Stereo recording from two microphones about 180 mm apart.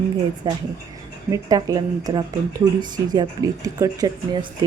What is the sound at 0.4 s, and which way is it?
Speech, 20° right (ahead or behind).